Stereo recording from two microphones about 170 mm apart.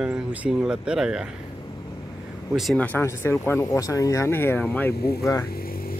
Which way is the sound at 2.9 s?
15° left (ahead or behind).